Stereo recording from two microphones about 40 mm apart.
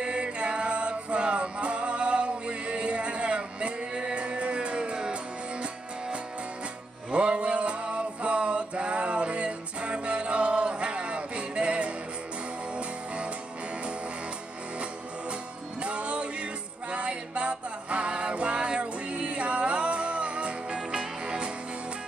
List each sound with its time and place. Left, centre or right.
0.0 s music: right
7.1 s male singing: right
12.7 s music: right
15.8 s music: right